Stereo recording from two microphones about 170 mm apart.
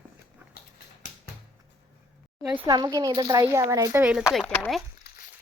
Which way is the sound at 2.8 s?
25° right (ahead or behind).